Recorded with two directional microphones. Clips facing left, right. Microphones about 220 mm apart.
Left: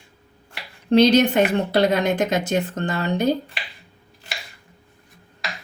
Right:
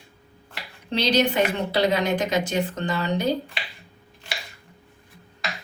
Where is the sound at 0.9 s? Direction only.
50° left (ahead or behind).